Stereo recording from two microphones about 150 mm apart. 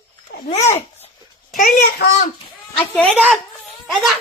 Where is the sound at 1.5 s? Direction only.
60° left (ahead or behind).